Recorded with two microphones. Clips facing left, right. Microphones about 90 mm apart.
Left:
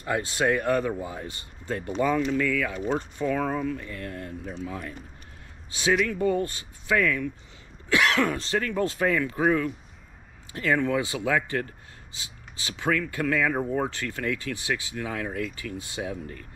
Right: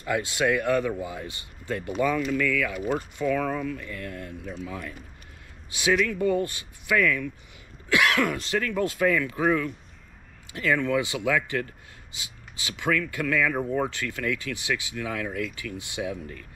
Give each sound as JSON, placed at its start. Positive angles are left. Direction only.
{"t": 0.3, "sound": "speech", "side_deg": 30}
{"t": 6.0, "sound": "speech", "side_deg": 30}
{"t": 10.5, "sound": "speech", "side_deg": 25}